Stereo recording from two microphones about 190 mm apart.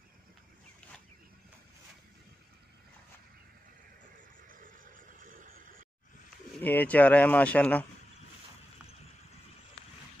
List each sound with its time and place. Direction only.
4.5 s vehicle: 45° right (ahead or behind)
5.2 s a sound: 45° right (ahead or behind)
6.6 s speech: 10° left (ahead or behind)